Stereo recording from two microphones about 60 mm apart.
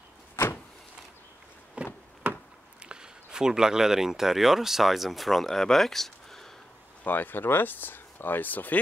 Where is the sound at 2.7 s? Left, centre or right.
Centre.